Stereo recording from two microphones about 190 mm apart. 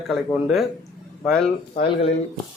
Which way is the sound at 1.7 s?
30° left (ahead or behind).